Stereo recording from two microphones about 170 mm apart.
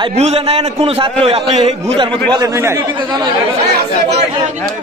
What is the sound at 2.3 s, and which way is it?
Speech, 20° right (ahead or behind).